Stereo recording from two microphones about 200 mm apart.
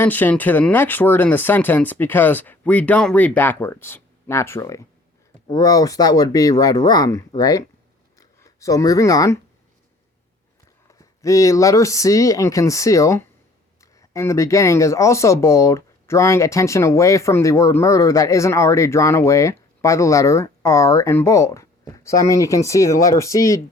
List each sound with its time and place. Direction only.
0.0 s speech: 10° left (ahead or behind)
10.8 s speech: 15° left (ahead or behind)